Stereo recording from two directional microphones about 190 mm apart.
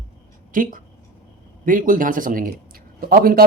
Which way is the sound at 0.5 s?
45° right (ahead or behind).